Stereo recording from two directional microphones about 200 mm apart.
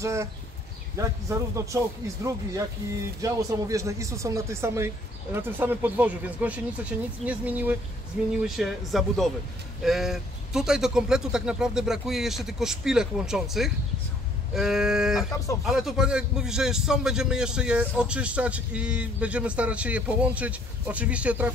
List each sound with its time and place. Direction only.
0.0 s speech: 15° right (ahead or behind)
3.2 s a man's voice: 15° right (ahead or behind)